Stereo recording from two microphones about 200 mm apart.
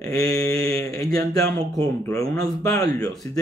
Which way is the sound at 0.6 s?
15° left (ahead or behind).